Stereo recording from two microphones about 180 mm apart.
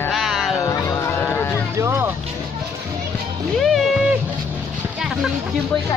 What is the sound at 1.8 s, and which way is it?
Speech, 15° right (ahead or behind).